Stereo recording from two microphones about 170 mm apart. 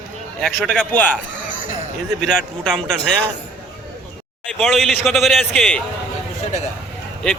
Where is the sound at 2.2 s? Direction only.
5° left (ahead or behind).